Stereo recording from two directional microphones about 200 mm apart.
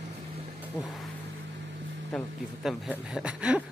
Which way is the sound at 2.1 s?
Centre (ahead or behind).